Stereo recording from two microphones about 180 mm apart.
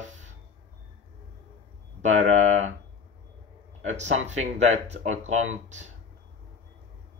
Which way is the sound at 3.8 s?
40° right (ahead or behind).